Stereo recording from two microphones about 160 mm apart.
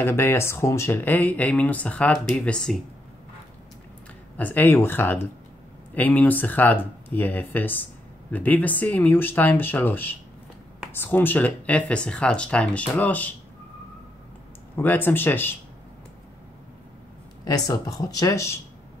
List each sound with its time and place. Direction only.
0.0 s speech: 15° left (ahead or behind)
4.4 s speech: 10° left (ahead or behind)
14.8 s speech: 10° left (ahead or behind)
17.5 s speech: 25° left (ahead or behind)